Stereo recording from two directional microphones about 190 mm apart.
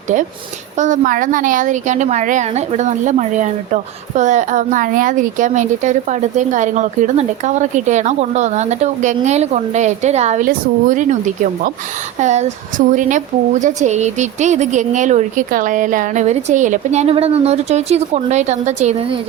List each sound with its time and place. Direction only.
0.8 s a woman's voice: 45° right (ahead or behind)
12.2 s a woman's voice: 40° right (ahead or behind)